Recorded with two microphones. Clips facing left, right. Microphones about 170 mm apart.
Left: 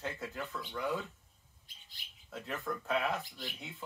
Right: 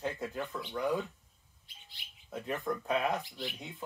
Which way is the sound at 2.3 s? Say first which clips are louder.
Right 4 dB; 15° right (ahead or behind).